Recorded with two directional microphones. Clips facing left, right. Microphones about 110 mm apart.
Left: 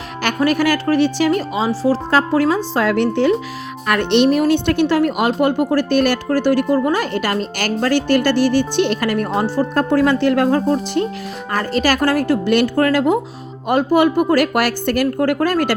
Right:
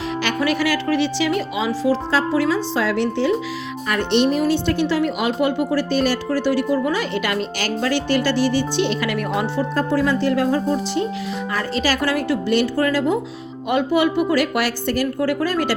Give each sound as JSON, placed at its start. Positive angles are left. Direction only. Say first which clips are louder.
{"t": 0.2, "sound": "a woman's voice", "louder": "left 5 dB", "side_deg": 45}
{"t": 2.0, "sound": "a woman's voice", "louder": "left 3 dB", "side_deg": 50}
{"t": 3.8, "sound": "a woman's voice", "louder": "left 4 dB", "side_deg": 70}
{"t": 9.7, "sound": "speech", "louder": "left 4 dB", "side_deg": 60}
{"t": 11.5, "sound": "a woman's voice", "louder": "left 5 dB", "side_deg": 50}
{"t": 12.5, "sound": "speech", "louder": "left 3 dB", "side_deg": 55}
{"t": 13.7, "sound": "a woman's voice", "louder": "left 4 dB", "side_deg": 45}